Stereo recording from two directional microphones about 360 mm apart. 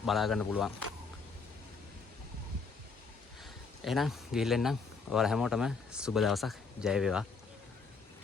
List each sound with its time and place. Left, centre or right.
0.0 s speech: centre
3.8 s speech: centre